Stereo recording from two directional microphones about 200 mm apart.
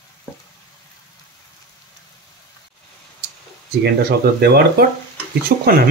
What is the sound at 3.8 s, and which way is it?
Speech, 55° right (ahead or behind).